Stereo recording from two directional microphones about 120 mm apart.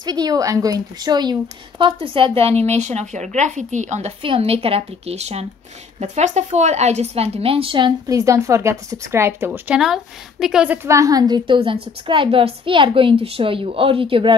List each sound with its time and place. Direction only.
0.0 s a woman's voice: 35° right (ahead or behind)
1.9 s a woman's voice: 50° right (ahead or behind); by 4.1 s 80° right
4.2 s a woman's voice: 50° right (ahead or behind)
5.9 s a woman's voice: 75° right (ahead or behind); by 7.9 s 45° right (ahead or behind)
8.1 s a woman's voice: 30° right (ahead or behind); by 10.8 s 5° right (ahead or behind)
10.8 s a woman's voice: 25° right (ahead or behind); by 14.3 s 50° right (ahead or behind)